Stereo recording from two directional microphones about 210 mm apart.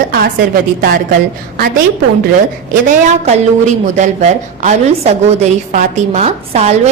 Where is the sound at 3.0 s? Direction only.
35° right (ahead or behind).